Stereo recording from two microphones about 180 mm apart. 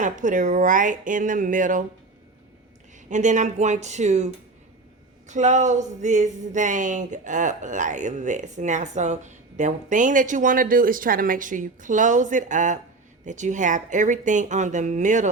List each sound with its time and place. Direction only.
0.0 s speech: 45° right (ahead or behind)
3.1 s speech: 40° right (ahead or behind)
5.3 s speech: 40° right (ahead or behind)